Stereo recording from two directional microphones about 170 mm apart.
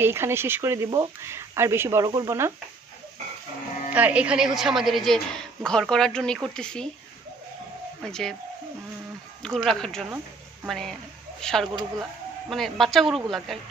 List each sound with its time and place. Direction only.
0.0 s speech: 15° right (ahead or behind)
3.9 s a man's voice: 10° right (ahead or behind)
8.0 s a man's voice: 5° left (ahead or behind)
9.4 s a man's voice: 5° left (ahead or behind)